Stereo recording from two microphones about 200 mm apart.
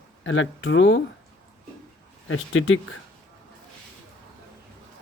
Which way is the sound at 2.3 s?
80° left.